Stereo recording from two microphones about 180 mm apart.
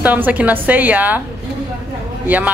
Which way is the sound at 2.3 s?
10° right (ahead or behind).